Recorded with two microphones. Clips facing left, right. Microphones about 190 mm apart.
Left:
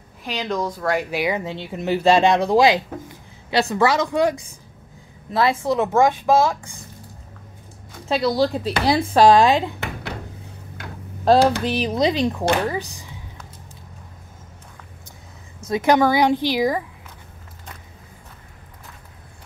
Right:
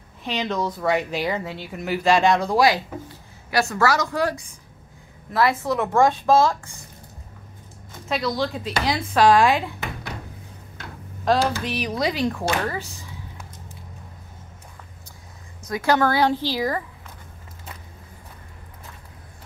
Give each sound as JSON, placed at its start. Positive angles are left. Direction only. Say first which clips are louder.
{"t": 0.2, "sound": "a woman's voice", "louder": "even", "side_deg": 0}
{"t": 1.1, "sound": "a woman's voice", "louder": "left 2 dB", "side_deg": 10}
{"t": 1.4, "sound": "a woman's voice", "louder": "left 4 dB", "side_deg": 25}
{"t": 8.1, "sound": "speech", "louder": "left 5 dB", "side_deg": 35}
{"t": 11.6, "sound": "a woman's voice", "louder": "left 5 dB", "side_deg": 30}
{"t": 15.6, "sound": "a woman's voice", "louder": "left 4 dB", "side_deg": 20}